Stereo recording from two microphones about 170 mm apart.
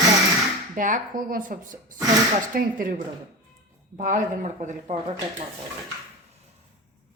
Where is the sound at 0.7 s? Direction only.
50° right (ahead or behind).